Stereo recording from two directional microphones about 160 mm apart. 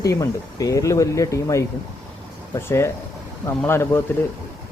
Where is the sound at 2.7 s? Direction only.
15° left (ahead or behind).